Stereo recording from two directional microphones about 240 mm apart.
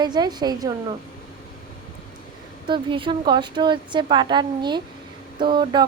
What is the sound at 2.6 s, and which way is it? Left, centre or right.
A woman's voice, right.